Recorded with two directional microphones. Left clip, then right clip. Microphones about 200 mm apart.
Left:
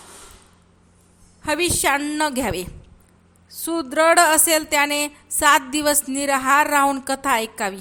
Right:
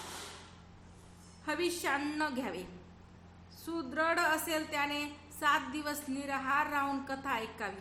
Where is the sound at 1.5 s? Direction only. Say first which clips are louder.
Left 14 dB; 45° left (ahead or behind).